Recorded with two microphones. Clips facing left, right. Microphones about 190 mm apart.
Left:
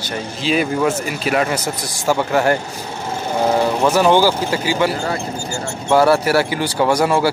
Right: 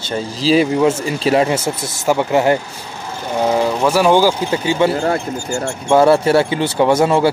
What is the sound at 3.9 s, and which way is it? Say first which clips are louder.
Speech: right 2 dB; 10° right (ahead or behind).